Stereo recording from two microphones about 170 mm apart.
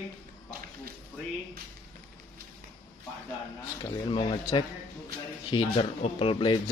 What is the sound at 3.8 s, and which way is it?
A man's voice, 30° left (ahead or behind).